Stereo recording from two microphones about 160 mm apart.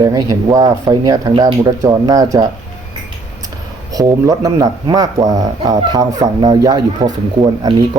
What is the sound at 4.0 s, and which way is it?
Speech, 20° right (ahead or behind).